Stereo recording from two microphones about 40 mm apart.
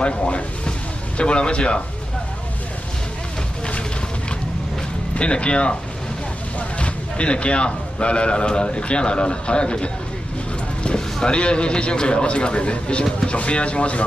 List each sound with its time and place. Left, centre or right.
0.0 s speech: left
5.1 s speech: left
6.8 s speech: left
11.2 s speech: left